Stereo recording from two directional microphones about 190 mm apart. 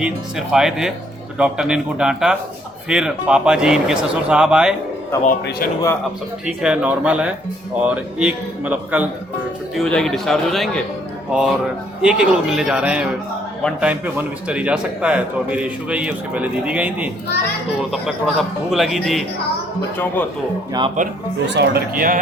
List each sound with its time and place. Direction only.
0.0 s speech: 5° right (ahead or behind)
5.2 s speech: 50° left (ahead or behind)
6.4 s a man's voice: 5° right (ahead or behind)
9.7 s a man's voice: 5° left (ahead or behind)
21.4 s speech: 60° right (ahead or behind)